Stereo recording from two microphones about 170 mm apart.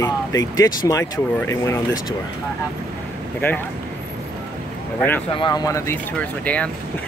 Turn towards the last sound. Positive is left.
turn(degrees=10)  # may be behind; listen again after turning